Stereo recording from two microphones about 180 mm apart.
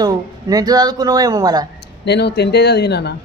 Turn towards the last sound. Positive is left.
turn(degrees=65)  # may be behind; listen again after turning